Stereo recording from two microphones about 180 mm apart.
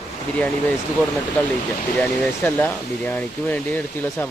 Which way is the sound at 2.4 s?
10° left (ahead or behind).